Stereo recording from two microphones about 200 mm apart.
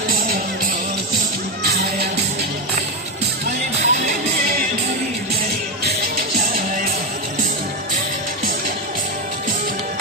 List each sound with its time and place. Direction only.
3.8 s music: 40° right (ahead or behind)